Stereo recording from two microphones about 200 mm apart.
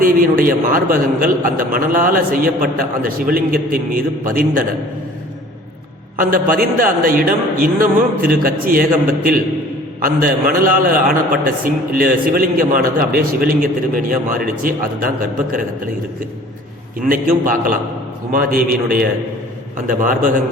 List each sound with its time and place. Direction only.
0.0 s a man's voice: 45° right (ahead or behind)
6.1 s a man's voice: 45° right (ahead or behind)
17.1 s a man's voice: 45° right (ahead or behind)